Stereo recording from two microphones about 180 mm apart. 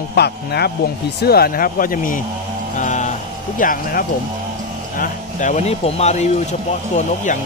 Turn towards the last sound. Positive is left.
turn(degrees=40)  # may be behind; listen again after turning